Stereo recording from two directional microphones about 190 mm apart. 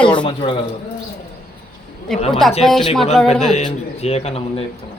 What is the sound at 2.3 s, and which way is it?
Speech, centre (ahead or behind).